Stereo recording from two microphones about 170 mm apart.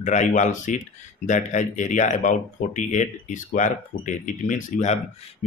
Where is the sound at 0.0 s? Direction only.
45° left (ahead or behind).